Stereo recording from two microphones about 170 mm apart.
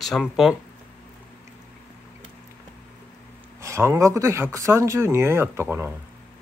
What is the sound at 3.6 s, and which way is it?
Speech, 15° right (ahead or behind).